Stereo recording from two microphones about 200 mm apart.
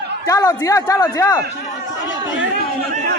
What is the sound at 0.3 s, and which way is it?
Speech, 15° left (ahead or behind).